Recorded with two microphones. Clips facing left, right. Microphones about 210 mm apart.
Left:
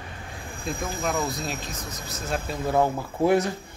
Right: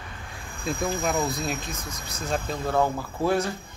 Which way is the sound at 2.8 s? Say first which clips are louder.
Left 3 dB; 20° left (ahead or behind).